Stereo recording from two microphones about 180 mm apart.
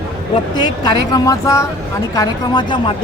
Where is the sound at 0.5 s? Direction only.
25° left (ahead or behind).